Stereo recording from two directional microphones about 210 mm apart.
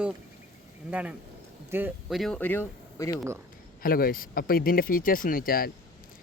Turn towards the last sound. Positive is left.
turn(degrees=45)  # may be behind; listen again after turning